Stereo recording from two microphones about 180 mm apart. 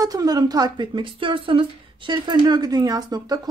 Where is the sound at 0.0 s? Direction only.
20° right (ahead or behind).